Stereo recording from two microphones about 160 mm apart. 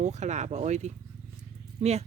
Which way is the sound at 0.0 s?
45° right (ahead or behind).